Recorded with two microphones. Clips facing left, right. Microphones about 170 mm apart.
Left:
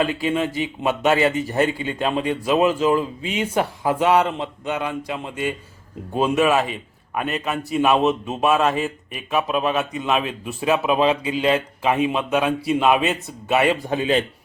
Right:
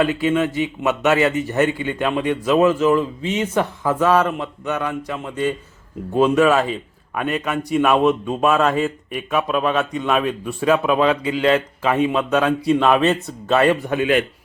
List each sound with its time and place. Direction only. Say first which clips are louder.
0.3 s a man's voice: right 3 dB; 20° left (ahead or behind)
3.8 s a man's voice: right 1 dB; 15° left (ahead or behind)
13.5 s speech: right 3 dB; 15° left (ahead or behind)
13.8 s speech: right 2 dB; 30° left (ahead or behind)